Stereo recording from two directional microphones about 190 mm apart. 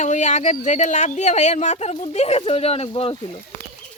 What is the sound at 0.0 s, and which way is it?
Speech, 40° left (ahead or behind).